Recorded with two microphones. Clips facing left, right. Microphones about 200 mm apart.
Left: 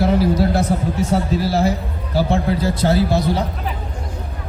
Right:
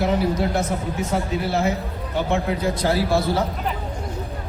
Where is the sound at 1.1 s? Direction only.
35° left (ahead or behind).